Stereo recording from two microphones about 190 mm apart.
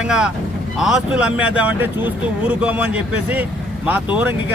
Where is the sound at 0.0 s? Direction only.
5° right (ahead or behind).